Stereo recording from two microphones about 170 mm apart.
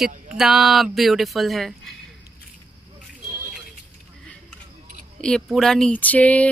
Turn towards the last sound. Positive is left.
turn(degrees=10)  # may be behind; listen again after turning